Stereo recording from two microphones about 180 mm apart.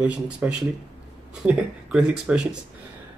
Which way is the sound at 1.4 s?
5° right (ahead or behind).